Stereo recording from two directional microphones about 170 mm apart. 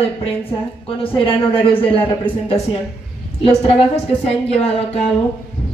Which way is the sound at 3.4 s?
35° left (ahead or behind).